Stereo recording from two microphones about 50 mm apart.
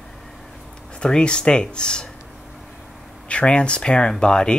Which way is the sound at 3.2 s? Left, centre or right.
Left.